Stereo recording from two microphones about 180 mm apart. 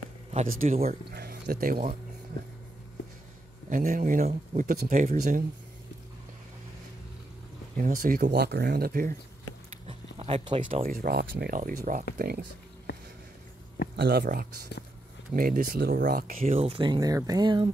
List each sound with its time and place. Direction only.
0.5 s speech: 40° right (ahead or behind)
1.1 s speech: 60° right (ahead or behind)
3.7 s speech: 50° right (ahead or behind)
7.7 s speech: 50° right (ahead or behind)
10.1 s speech: 30° right (ahead or behind)
10.8 s speech: 55° right (ahead or behind)
13.9 s speech: 60° right (ahead or behind)
16.3 s speech: 35° right (ahead or behind)